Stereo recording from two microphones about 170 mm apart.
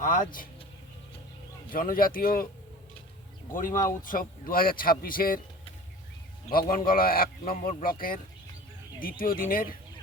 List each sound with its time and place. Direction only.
0.0 s speech: 50° left (ahead or behind)
1.7 s a man's voice: 55° left (ahead or behind)
3.8 s a man's voice: 55° left (ahead or behind)
6.5 s a man's voice: 60° left (ahead or behind)